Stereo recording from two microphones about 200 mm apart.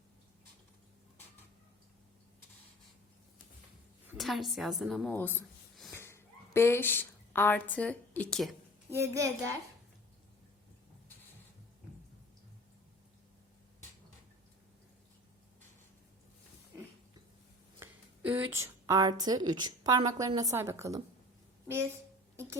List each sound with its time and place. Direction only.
4.1 s a woman's voice: centre (ahead or behind)
8.9 s a woman's voice: 15° right (ahead or behind)
17.7 s a sound: 10° right (ahead or behind)
18.5 s a woman's voice: 15° right (ahead or behind)